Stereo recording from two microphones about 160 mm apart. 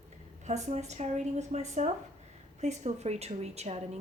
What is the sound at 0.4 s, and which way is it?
Speech, 45° right (ahead or behind).